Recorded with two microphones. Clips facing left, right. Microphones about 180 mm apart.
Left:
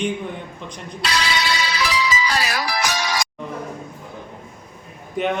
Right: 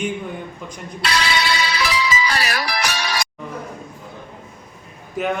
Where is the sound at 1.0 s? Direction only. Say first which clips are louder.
Right 2 dB; 60° right (ahead or behind).